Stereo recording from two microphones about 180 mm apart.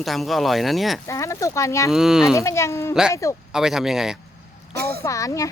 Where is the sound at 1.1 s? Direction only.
15° left (ahead or behind).